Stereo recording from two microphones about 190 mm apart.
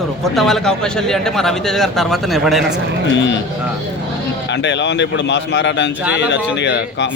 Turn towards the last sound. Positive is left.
turn(degrees=70)  # may be behind; listen again after turning